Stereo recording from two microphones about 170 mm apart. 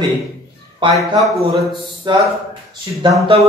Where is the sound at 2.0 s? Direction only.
25° right (ahead or behind).